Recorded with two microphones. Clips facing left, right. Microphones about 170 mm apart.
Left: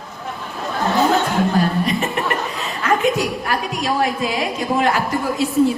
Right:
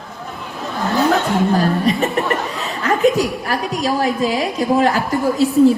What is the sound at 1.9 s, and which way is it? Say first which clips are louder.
Chuckle: right 4 dB; centre (ahead or behind).